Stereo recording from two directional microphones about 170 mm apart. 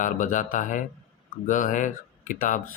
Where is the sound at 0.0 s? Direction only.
50° left (ahead or behind).